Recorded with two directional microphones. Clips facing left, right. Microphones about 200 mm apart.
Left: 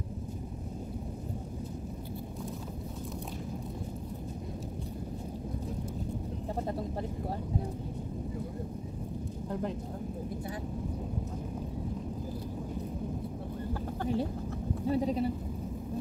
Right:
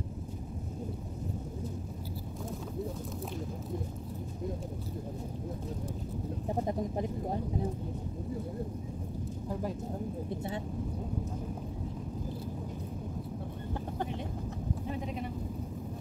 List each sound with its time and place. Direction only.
6.5 s speech: 15° right (ahead or behind)
9.5 s speech: 5° right (ahead or behind)
14.9 s a sound: 35° left (ahead or behind)